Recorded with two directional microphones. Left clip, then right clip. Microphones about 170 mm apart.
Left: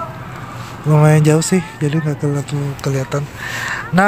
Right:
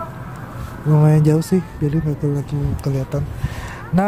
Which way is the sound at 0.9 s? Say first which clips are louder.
Left 4 dB; 5° left (ahead or behind).